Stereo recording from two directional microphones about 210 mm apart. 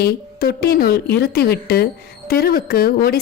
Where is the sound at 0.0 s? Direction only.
45° left (ahead or behind).